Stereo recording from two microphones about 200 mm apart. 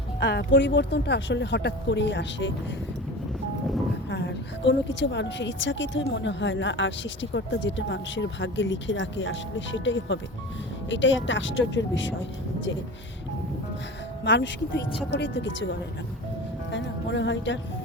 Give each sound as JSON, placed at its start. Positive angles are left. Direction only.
{"t": 0.2, "sound": "speech", "side_deg": 60}
{"t": 4.1, "sound": "a woman's voice", "side_deg": 65}
{"t": 14.3, "sound": "a woman's voice", "side_deg": 65}
{"t": 16.7, "sound": "speech", "side_deg": 65}